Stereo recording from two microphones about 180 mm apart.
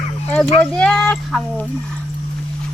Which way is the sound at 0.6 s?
5° left (ahead or behind).